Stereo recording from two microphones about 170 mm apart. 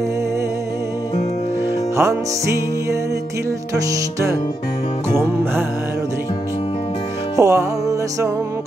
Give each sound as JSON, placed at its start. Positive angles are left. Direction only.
{"t": 2.0, "sound": "music", "side_deg": -20}
{"t": 7.3, "sound": "music", "side_deg": -20}